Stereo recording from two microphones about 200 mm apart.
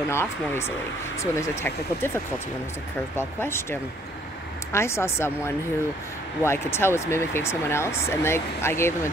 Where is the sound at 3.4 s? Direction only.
10° left (ahead or behind).